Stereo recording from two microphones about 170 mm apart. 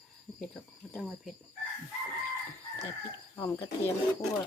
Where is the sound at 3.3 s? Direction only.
15° left (ahead or behind).